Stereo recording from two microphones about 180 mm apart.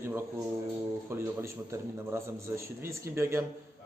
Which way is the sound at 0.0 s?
15° right (ahead or behind).